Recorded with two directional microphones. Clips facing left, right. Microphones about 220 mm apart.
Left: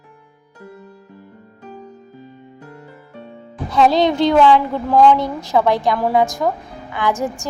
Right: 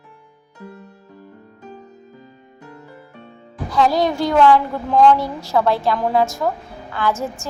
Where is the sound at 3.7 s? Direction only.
25° left (ahead or behind).